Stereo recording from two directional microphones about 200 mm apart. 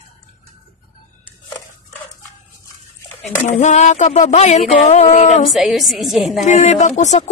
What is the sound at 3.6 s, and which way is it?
Speech, 35° left (ahead or behind).